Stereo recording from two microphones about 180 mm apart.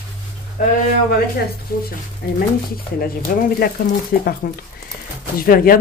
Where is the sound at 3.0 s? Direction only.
55° left (ahead or behind).